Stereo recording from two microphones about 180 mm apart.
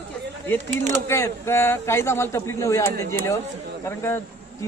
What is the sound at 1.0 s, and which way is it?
Speech, 15° left (ahead or behind).